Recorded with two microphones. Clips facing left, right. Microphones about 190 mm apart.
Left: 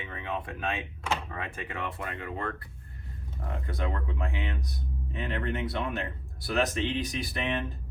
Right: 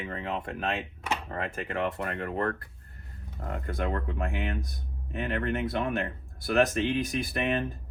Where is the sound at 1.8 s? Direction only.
50° right (ahead or behind).